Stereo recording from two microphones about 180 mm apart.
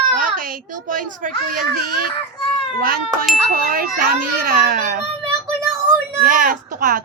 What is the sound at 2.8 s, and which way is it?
A child's voice, 55° right (ahead or behind).